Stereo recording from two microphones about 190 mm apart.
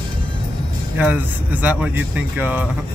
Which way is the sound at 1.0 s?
10° right (ahead or behind).